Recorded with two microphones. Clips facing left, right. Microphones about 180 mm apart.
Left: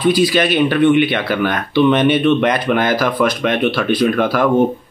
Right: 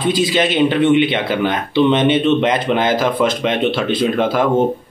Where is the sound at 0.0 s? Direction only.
25° right (ahead or behind).